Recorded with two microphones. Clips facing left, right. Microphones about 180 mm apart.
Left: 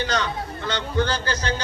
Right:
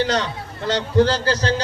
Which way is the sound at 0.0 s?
35° right (ahead or behind).